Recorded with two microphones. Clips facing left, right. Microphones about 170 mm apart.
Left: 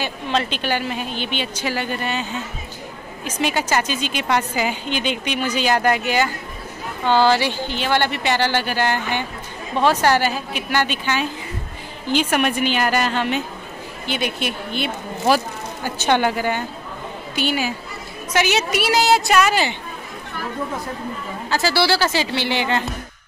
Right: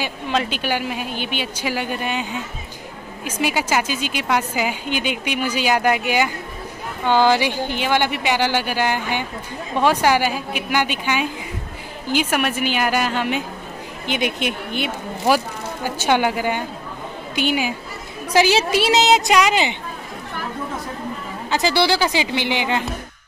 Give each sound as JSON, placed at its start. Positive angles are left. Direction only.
{"t": 0.0, "sound": "a woman's voice", "side_deg": -10}
{"t": 18.4, "sound": "a woman's voice", "side_deg": -30}
{"t": 21.5, "sound": "a woman's voice", "side_deg": -20}